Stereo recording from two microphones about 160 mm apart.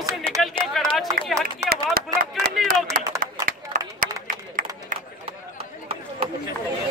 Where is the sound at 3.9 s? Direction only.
60° right (ahead or behind).